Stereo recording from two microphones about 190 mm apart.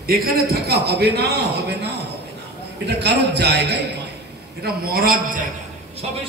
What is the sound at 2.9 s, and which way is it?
A man's voice, 60° right (ahead or behind).